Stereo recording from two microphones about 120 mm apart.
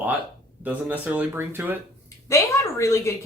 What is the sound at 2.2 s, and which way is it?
Speech, 25° left (ahead or behind).